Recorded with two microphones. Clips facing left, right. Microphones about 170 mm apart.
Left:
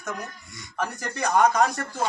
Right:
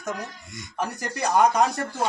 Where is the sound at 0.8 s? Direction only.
10° right (ahead or behind).